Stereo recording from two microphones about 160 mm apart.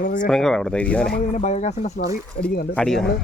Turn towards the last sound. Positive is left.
turn(degrees=5)  # may be behind; listen again after turning